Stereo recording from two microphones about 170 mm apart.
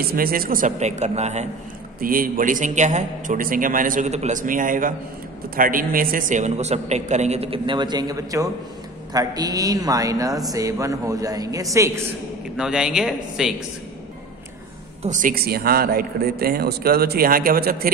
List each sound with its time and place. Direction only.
0.0 s a man's voice: 60° right (ahead or behind); by 1.5 s 40° right (ahead or behind)
2.0 s a man's voice: 55° right (ahead or behind); by 12.0 s 15° right (ahead or behind)
12.5 s speech: 5° right (ahead or behind)
15.0 s speech: 50° right (ahead or behind)